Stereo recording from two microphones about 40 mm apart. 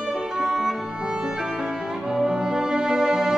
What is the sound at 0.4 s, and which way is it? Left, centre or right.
Music, centre.